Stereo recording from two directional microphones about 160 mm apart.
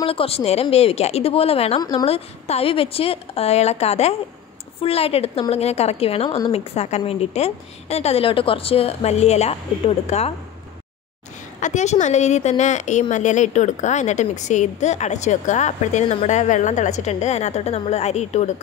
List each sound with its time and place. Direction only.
0.0 s a woman's voice: 35° left (ahead or behind)
11.6 s a woman's voice: 45° left (ahead or behind)